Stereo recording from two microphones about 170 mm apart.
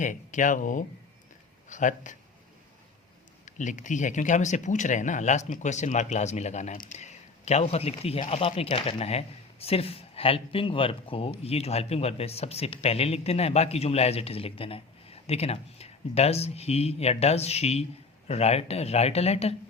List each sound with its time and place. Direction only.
0.0 s speech: 45° left (ahead or behind)
3.4 s speech: 45° left (ahead or behind)